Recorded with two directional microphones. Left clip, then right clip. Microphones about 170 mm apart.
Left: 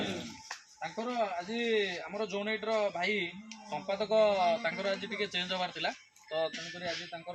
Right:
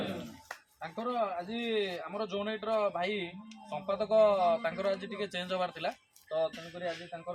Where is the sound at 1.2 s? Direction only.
5° right (ahead or behind); by 5.9 s 25° right (ahead or behind).